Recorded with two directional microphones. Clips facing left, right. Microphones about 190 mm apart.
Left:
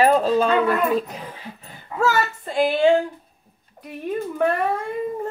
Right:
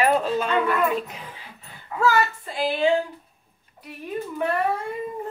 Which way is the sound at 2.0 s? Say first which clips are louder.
Even; 45° left (ahead or behind).